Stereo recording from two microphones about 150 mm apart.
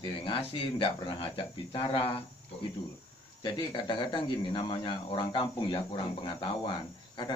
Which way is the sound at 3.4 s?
30° left (ahead or behind).